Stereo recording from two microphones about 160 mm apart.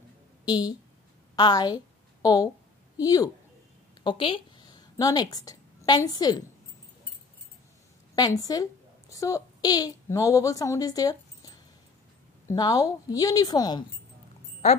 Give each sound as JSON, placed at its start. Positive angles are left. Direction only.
{"t": 0.5, "sound": "a woman's voice", "side_deg": 25}
{"t": 8.2, "sound": "a woman's voice", "side_deg": 25}